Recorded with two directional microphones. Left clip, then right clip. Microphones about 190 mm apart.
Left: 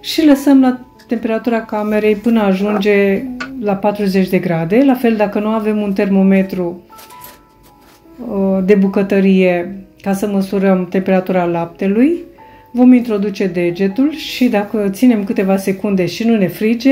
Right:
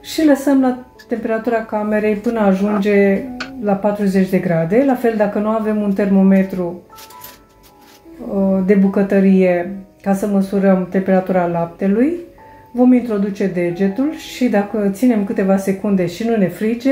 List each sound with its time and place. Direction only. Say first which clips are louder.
0.3 s speech: left 4 dB; 35° left (ahead or behind)
8.4 s speech: left 3 dB; 35° left (ahead or behind)